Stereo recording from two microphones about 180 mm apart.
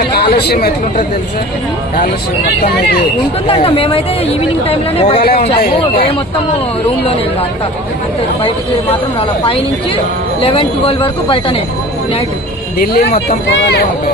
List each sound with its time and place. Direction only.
0.0 s chatter: 65° left (ahead or behind)
3.4 s a woman's voice: 30° left (ahead or behind)
10.4 s speech: 30° left (ahead or behind)
12.8 s speech: 60° left (ahead or behind)